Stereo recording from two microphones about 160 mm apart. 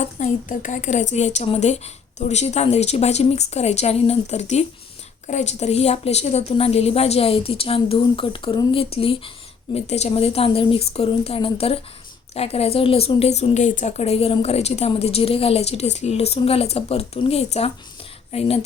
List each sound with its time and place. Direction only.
0.0 s a woman's voice: 50° left (ahead or behind)